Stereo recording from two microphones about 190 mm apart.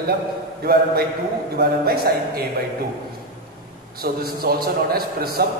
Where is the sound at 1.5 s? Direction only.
55° right (ahead or behind).